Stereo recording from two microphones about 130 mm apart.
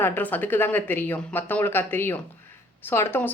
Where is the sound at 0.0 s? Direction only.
15° left (ahead or behind).